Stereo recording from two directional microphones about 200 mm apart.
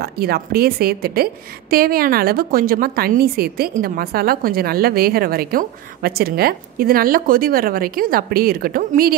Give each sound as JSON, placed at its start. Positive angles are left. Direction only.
{"t": 0.0, "sound": "a woman's voice", "side_deg": -50}